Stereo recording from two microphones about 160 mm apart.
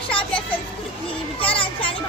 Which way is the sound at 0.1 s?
35° left (ahead or behind).